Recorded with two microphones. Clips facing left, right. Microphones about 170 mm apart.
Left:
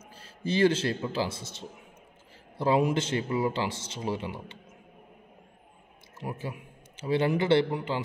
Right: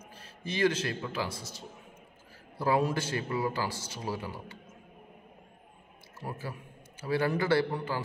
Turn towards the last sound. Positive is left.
turn(degrees=20)  # may be behind; listen again after turning